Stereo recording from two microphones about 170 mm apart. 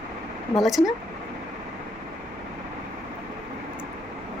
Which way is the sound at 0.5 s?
Centre (ahead or behind).